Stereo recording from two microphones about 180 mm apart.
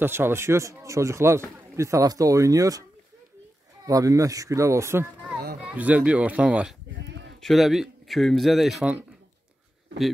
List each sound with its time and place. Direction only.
0.0 s a man's voice: 15° right (ahead or behind)
3.8 s a man's voice: 20° right (ahead or behind)
7.0 s sheep: 75° right (ahead or behind)
7.3 s speech: centre (ahead or behind)